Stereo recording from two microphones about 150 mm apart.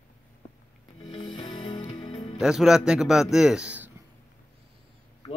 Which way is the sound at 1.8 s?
35° left (ahead or behind).